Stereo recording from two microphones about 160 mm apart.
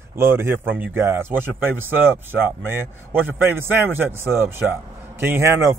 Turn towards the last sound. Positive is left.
turn(degrees=-15)  # may be behind; listen again after turning